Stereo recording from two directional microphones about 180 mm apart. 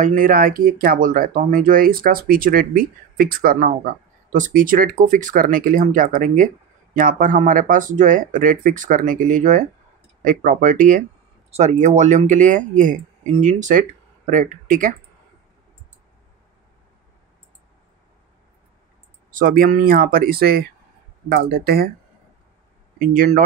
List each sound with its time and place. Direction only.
0.0 s speech: 50° right (ahead or behind)
19.3 s speech: 50° right (ahead or behind)
22.9 s speech: 55° right (ahead or behind)